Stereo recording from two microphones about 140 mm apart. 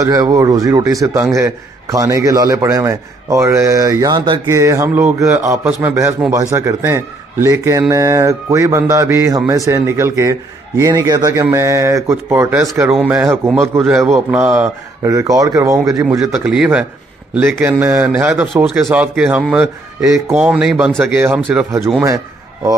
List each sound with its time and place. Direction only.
0.0 s a man's voice: 25° right (ahead or behind)
16.2 s a man's voice: 5° right (ahead or behind)
18.3 s a man's voice: 5° right (ahead or behind)